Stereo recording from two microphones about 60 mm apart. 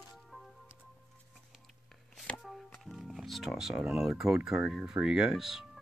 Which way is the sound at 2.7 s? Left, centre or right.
Centre.